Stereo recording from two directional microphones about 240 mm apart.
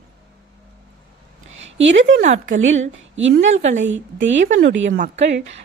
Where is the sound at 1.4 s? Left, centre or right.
Right.